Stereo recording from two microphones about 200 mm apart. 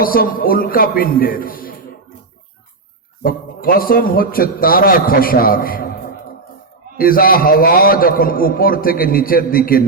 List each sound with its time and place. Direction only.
0.0 s a man's voice: 45° left (ahead or behind)
3.2 s a man's voice: 45° left (ahead or behind)
6.9 s a man's voice: 45° left (ahead or behind)